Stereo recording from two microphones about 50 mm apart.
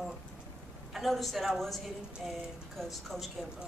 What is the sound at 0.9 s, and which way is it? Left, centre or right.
Speech, centre.